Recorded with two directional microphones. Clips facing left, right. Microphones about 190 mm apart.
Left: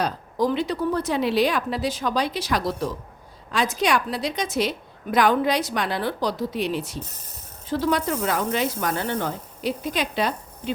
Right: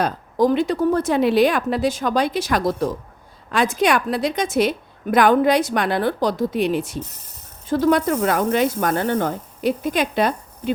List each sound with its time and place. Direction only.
0.0 s a woman's voice: 50° right (ahead or behind)